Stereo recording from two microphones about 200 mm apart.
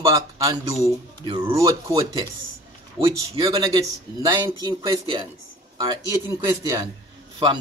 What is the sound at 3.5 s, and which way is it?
A man's voice, 20° right (ahead or behind).